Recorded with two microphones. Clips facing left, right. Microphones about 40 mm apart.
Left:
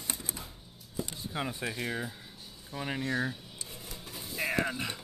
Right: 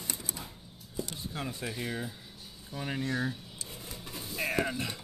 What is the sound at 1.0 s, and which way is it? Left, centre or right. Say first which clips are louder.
Speech: left 2 dB; left.